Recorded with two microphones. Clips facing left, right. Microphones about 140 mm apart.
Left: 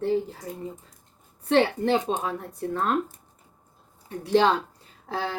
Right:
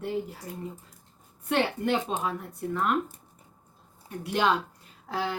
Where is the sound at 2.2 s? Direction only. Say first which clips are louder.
Left 2 dB; 30° left (ahead or behind).